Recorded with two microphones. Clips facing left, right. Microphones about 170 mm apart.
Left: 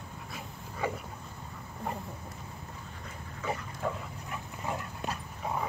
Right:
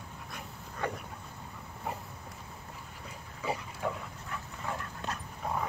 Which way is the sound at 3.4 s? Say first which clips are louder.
Even; 5° right (ahead or behind).